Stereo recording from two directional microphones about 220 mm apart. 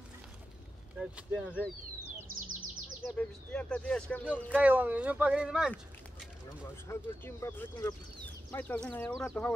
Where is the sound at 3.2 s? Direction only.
5° left (ahead or behind).